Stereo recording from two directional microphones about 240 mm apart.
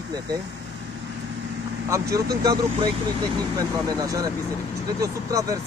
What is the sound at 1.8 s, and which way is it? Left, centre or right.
Speech, centre.